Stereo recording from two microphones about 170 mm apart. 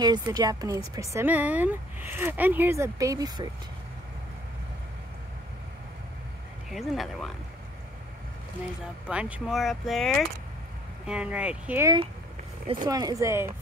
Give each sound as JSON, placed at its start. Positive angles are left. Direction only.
{"t": 0.0, "sound": "a woman's voice", "side_deg": -25}
{"t": 1.1, "sound": "speech", "side_deg": -10}
{"t": 6.7, "sound": "speech", "side_deg": 0}
{"t": 9.0, "sound": "speech", "side_deg": -5}
{"t": 12.8, "sound": "a woman's voice", "side_deg": -20}